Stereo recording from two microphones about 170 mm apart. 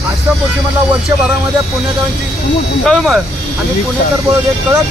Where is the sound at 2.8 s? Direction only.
Centre (ahead or behind).